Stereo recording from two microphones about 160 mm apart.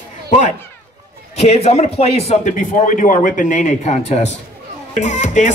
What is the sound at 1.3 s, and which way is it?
Speech, 40° left (ahead or behind).